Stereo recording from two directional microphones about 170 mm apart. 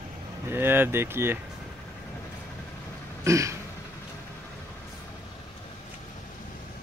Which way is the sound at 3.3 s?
15° right (ahead or behind).